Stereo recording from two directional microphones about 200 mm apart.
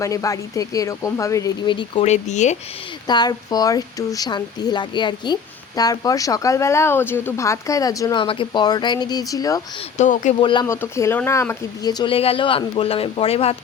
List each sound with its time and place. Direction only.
0.0 s speech: 15° left (ahead or behind); by 2.6 s 35° left (ahead or behind)
3.1 s speech: 20° left (ahead or behind)
10.0 s speech: 35° left (ahead or behind)
10.5 s speech: 20° left (ahead or behind)